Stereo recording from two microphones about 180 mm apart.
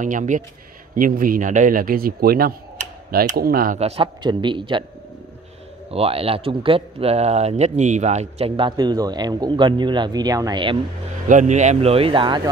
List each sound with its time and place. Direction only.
0.0 s a man's voice: 45° right (ahead or behind)
3.8 s speech: 30° right (ahead or behind)
5.9 s speech: 35° right (ahead or behind)
11.2 s speech: 45° right (ahead or behind); by 12.4 s 25° right (ahead or behind)